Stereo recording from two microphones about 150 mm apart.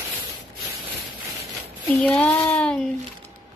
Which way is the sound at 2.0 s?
5° left (ahead or behind).